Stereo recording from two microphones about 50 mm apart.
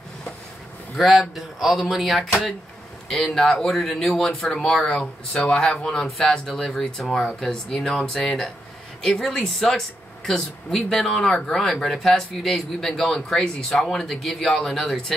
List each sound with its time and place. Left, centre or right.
0.9 s speech: centre
6.4 s speech: centre